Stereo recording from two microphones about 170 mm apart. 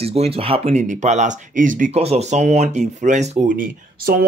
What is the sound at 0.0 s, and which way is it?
Speech, 35° right (ahead or behind).